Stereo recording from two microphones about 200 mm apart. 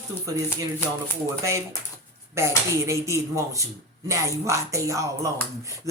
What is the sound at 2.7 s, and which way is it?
Speech, 15° right (ahead or behind).